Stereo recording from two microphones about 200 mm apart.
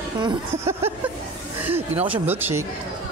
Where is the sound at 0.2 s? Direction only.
20° right (ahead or behind).